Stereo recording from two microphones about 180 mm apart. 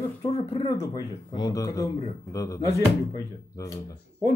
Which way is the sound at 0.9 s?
25° left (ahead or behind).